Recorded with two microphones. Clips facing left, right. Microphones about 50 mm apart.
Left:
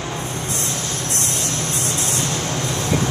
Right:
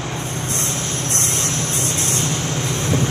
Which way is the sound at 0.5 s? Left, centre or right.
Right.